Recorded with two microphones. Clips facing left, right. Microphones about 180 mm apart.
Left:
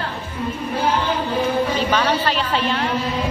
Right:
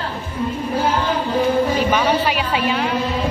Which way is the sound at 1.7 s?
10° right (ahead or behind).